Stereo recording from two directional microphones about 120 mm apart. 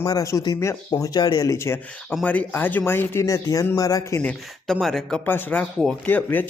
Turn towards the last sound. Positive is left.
turn(degrees=15)  # may be behind; listen again after turning